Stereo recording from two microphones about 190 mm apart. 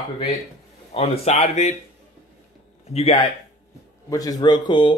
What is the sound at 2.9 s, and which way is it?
Speech, 30° left (ahead or behind).